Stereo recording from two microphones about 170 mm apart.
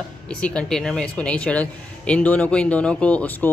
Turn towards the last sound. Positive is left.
turn(degrees=10)  # may be behind; listen again after turning